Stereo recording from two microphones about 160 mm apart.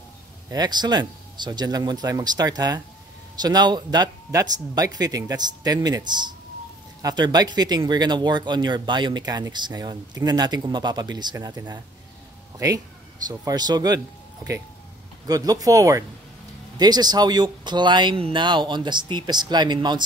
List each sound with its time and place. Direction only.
0.5 s speech: 25° right (ahead or behind)